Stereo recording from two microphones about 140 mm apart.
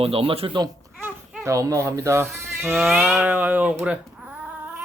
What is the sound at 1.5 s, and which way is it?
Speech, 25° right (ahead or behind).